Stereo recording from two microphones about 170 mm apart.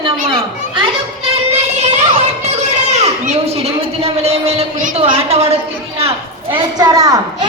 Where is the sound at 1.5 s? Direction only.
40° right (ahead or behind).